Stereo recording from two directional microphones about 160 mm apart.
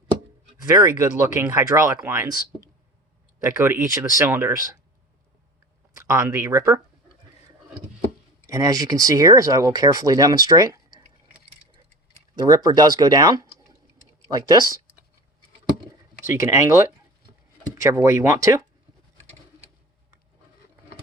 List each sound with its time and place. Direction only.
0.6 s speech: 25° right (ahead or behind)
6.1 s speech: 20° right (ahead or behind)
8.4 s speech: 20° right (ahead or behind)
12.4 s speech: 25° right (ahead or behind)
16.3 s speech: 20° right (ahead or behind)